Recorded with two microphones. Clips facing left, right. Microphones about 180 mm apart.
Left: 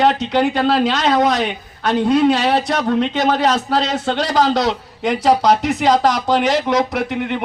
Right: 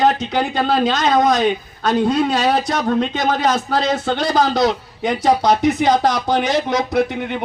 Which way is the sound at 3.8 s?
75° left (ahead or behind).